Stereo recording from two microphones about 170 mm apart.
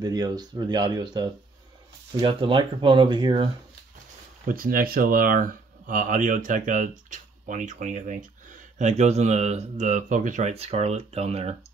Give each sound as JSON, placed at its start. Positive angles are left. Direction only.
{"t": 0.0, "sound": "speech", "side_deg": -25}
{"t": 4.5, "sound": "speech", "side_deg": -55}